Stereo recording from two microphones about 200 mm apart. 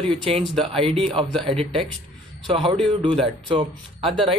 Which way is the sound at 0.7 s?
30° right (ahead or behind).